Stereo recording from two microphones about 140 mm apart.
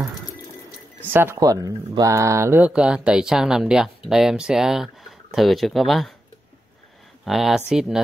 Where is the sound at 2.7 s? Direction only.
5° right (ahead or behind).